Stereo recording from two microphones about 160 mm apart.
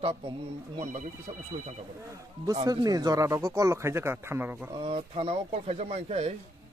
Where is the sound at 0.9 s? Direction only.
50° right (ahead or behind).